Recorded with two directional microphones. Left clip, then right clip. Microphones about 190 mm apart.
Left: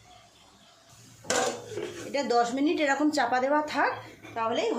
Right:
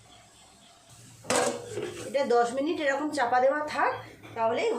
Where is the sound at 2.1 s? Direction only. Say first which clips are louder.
Right 1 dB; 40° left (ahead or behind).